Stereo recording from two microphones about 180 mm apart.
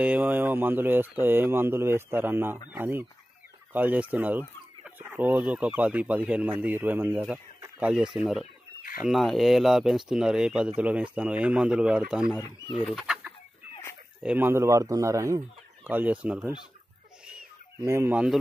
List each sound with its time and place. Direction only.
0.0 s speech: 10° right (ahead or behind)
17.8 s speech: 15° right (ahead or behind)